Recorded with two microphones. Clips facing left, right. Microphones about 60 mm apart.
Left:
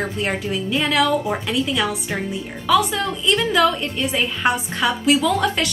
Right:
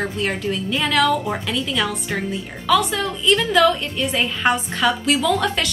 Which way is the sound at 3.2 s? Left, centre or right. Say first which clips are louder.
Right 2 dB; centre.